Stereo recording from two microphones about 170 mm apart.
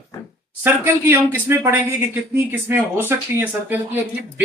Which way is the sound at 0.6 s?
15° right (ahead or behind).